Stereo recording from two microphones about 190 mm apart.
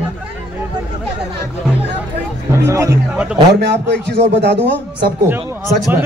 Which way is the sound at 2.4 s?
15° right (ahead or behind).